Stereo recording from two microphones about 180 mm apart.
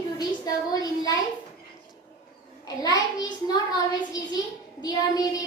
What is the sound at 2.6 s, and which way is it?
Speech, 20° left (ahead or behind).